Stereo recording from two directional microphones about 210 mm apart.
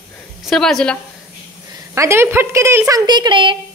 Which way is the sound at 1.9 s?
15° right (ahead or behind).